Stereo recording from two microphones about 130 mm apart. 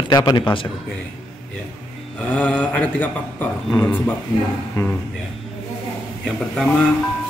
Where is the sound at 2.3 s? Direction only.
10° left (ahead or behind).